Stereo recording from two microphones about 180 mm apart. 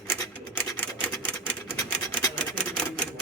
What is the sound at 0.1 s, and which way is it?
Typewriter, 10° left (ahead or behind).